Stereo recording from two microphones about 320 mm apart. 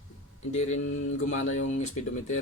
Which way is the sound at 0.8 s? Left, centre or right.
Left.